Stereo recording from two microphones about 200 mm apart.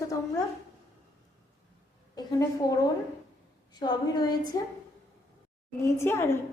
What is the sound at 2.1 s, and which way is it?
A woman's voice, 15° left (ahead or behind).